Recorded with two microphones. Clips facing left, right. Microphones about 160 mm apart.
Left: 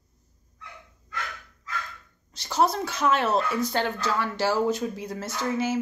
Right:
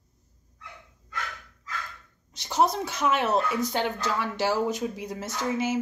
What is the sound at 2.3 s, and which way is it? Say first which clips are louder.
Speech: even; 20° right (ahead or behind).